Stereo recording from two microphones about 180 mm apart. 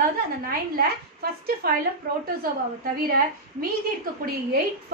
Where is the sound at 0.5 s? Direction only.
60° right (ahead or behind).